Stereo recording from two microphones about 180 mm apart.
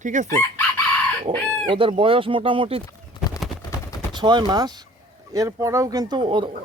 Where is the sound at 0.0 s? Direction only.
45° right (ahead or behind).